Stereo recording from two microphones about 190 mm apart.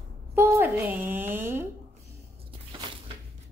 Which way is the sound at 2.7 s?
25° right (ahead or behind).